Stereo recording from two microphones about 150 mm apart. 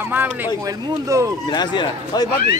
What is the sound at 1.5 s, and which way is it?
Speech, 30° left (ahead or behind).